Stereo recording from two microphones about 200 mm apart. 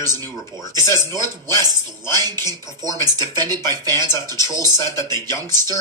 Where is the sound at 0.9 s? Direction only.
20° right (ahead or behind).